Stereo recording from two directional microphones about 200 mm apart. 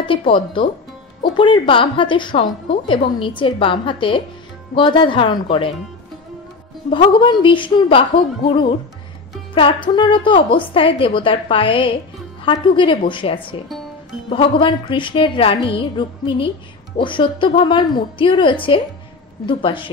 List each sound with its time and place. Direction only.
0.0 s a woman's voice: 25° left (ahead or behind)
6.9 s a woman's voice: 25° left (ahead or behind)